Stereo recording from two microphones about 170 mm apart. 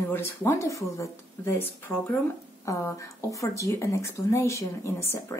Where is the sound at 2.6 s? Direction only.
20° left (ahead or behind).